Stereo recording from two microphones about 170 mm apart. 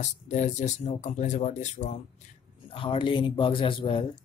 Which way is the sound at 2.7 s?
30° left (ahead or behind).